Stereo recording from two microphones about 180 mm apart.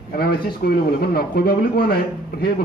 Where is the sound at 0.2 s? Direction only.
60° left (ahead or behind).